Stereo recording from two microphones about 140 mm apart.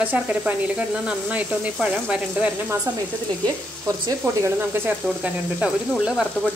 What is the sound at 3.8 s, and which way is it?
A woman's voice, 25° right (ahead or behind).